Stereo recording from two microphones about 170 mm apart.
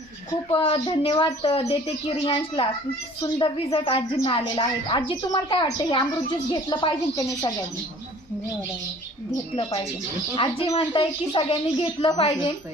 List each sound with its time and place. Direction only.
0.5 s a woman's voice: 30° left (ahead or behind)
10.3 s a woman's voice: 30° left (ahead or behind)